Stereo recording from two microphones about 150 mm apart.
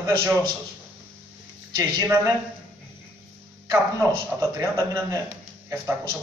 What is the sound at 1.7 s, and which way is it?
Speech, 20° right (ahead or behind).